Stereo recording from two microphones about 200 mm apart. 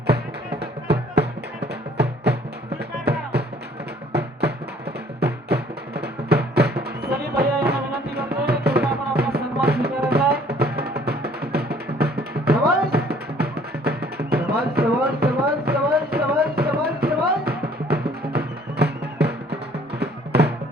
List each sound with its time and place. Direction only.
0.1 s music: 55° right (ahead or behind)